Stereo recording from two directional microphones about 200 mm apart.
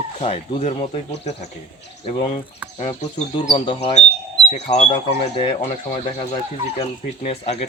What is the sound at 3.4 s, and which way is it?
Speech, 25° left (ahead or behind).